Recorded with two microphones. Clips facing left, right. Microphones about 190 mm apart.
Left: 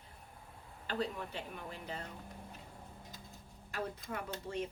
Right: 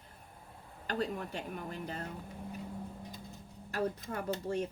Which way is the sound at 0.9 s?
50° right (ahead or behind).